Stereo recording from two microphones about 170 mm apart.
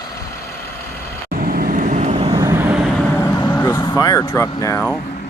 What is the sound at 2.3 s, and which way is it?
Vehicle, 15° right (ahead or behind).